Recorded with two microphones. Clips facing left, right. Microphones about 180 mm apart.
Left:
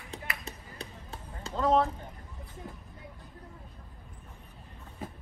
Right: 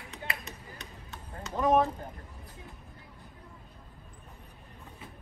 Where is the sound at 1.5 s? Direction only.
15° right (ahead or behind).